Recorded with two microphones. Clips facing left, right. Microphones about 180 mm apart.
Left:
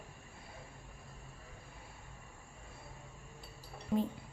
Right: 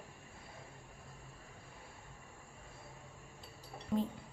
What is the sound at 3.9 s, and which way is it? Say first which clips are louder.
Dishes: left 2 dB; 5° left (ahead or behind).